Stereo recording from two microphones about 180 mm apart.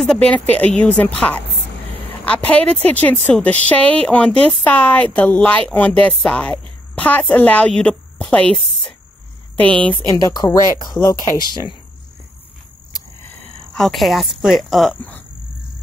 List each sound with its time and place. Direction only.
0.0 s a woman's voice: 5° left (ahead or behind)
10.0 s speech: 20° left (ahead or behind)
13.7 s a woman's voice: centre (ahead or behind)